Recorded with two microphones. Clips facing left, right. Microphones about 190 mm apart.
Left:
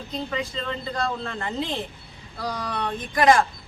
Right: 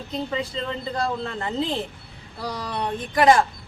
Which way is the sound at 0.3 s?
25° right (ahead or behind).